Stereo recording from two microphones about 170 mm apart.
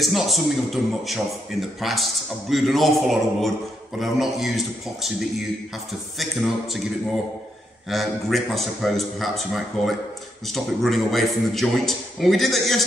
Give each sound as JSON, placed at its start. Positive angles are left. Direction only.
{"t": 0.0, "sound": "a man's voice", "side_deg": 0}
{"t": 6.1, "sound": "a man's voice", "side_deg": 0}
{"t": 7.9, "sound": "a man's voice", "side_deg": 0}